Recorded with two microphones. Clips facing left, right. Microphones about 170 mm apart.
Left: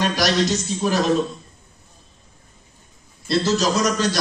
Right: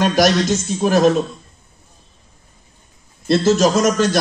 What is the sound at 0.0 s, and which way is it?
A man's voice, 50° right (ahead or behind).